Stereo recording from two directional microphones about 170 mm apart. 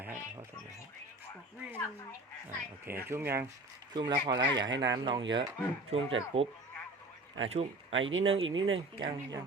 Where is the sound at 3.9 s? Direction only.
25° right (ahead or behind).